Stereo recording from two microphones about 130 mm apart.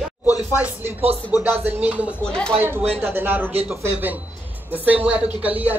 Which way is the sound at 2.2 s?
5° left (ahead or behind).